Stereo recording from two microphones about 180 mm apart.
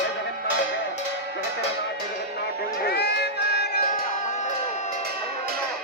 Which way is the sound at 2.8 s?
65° left (ahead or behind).